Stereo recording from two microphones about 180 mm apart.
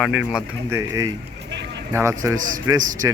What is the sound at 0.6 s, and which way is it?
Speech, 15° right (ahead or behind).